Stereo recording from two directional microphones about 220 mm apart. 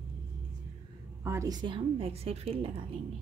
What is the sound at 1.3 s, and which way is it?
A woman's voice, 15° right (ahead or behind).